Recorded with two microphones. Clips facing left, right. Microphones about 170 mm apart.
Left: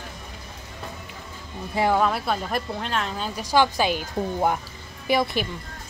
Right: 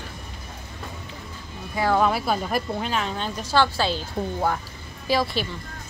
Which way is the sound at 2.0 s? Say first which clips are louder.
Right 1 dB; 5° right (ahead or behind).